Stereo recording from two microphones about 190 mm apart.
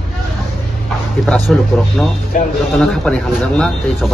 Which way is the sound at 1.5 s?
5° left (ahead or behind).